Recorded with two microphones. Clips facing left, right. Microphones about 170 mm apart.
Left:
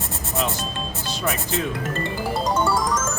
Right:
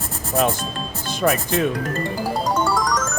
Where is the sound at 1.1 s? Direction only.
55° right (ahead or behind).